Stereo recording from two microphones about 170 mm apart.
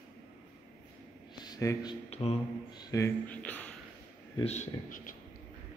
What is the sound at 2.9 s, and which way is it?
Speech, 20° left (ahead or behind).